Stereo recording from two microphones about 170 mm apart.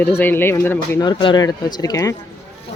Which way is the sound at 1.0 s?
25° left (ahead or behind).